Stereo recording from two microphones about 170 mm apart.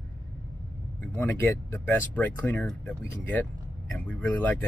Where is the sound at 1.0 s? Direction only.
10° left (ahead or behind).